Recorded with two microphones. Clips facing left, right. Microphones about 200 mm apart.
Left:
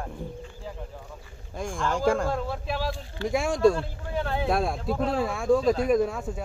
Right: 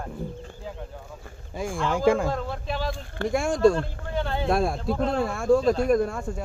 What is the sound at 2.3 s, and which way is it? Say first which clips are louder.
Speech: even; 5° left (ahead or behind).